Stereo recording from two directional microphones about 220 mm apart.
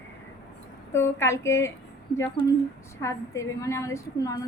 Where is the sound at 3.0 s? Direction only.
15° left (ahead or behind).